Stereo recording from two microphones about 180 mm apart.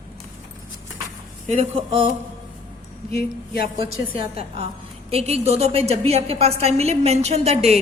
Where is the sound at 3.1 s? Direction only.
55° left (ahead or behind).